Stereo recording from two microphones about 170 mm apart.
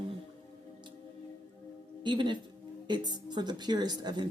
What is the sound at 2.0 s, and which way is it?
Speech, 30° right (ahead or behind).